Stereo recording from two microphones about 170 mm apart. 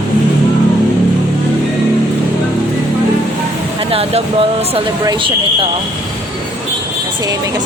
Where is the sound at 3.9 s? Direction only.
35° right (ahead or behind).